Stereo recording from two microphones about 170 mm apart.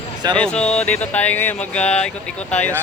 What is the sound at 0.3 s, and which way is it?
A man's voice, 5° left (ahead or behind).